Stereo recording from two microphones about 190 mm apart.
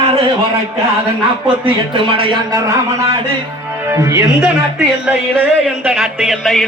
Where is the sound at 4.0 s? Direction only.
15° right (ahead or behind).